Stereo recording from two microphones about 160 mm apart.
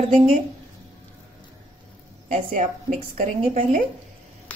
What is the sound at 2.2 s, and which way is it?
Speech, 50° right (ahead or behind).